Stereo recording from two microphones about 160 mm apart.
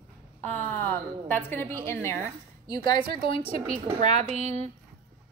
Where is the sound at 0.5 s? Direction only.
10° left (ahead or behind).